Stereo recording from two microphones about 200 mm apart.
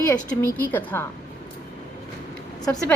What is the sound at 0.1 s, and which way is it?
Speech, 10° left (ahead or behind).